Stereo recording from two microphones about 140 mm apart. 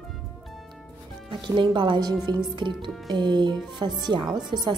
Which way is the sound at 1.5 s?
35° right (ahead or behind).